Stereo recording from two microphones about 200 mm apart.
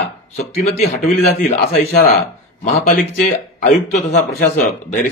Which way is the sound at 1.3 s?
45° left (ahead or behind).